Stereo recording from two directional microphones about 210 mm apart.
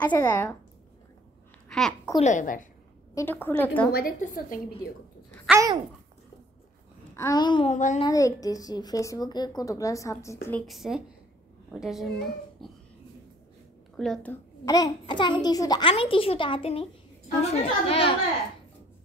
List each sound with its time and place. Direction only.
0.0 s a child's voice: 10° left (ahead or behind)
1.7 s a child's voice: centre (ahead or behind)
2.1 s a woman's voice: 35° left (ahead or behind)
3.2 s a child's voice: 10° left (ahead or behind)
3.9 s a woman's voice: 40° left (ahead or behind)
5.5 s babbling: 15° right (ahead or behind)
7.2 s a child's voice: 20° left (ahead or behind)
7.7 s a woman's voice: 35° left (ahead or behind)
8.0 s a child's voice: 15° left (ahead or behind)
10.7 s speech: centre (ahead or behind)
13.9 s a child's voice: centre (ahead or behind); by 18.1 s 30° left (ahead or behind)